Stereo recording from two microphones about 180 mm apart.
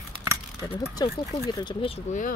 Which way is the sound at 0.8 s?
15° left (ahead or behind).